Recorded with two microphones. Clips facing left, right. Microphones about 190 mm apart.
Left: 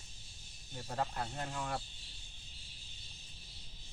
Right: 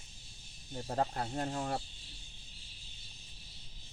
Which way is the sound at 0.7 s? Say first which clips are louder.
Right 4 dB; 40° right (ahead or behind).